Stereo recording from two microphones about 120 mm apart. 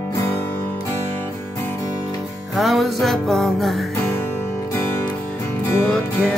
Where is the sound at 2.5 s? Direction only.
Centre (ahead or behind).